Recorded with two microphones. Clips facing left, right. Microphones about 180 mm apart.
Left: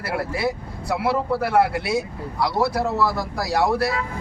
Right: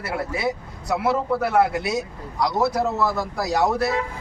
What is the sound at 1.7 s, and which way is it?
A man's voice, 20° right (ahead or behind).